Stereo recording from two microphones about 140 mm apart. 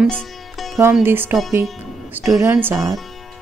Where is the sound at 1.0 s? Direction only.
15° right (ahead or behind).